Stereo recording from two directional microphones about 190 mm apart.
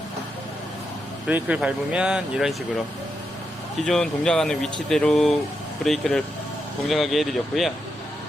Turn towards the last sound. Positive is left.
turn(degrees=0)  # may be behind; listen again after turning